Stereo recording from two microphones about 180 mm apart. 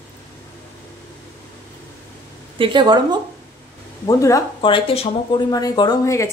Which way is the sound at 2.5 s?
25° right (ahead or behind).